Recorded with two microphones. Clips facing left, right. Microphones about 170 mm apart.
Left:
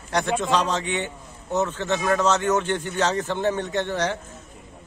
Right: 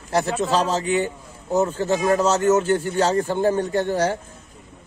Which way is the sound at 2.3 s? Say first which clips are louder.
Right 4 dB; 30° right (ahead or behind).